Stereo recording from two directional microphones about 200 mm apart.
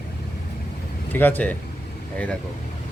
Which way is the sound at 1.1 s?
10° left (ahead or behind).